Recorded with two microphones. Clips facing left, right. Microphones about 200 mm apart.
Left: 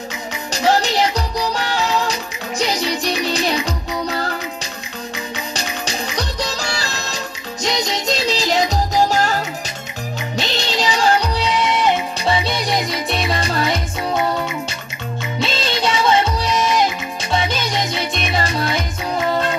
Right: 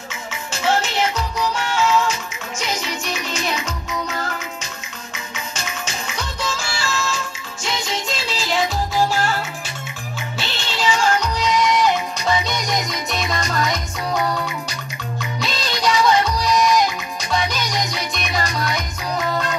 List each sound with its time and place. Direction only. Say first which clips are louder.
0.5 s music: left 4 dB; 40° left (ahead or behind)
5.5 s music: left 2 dB; 35° left (ahead or behind)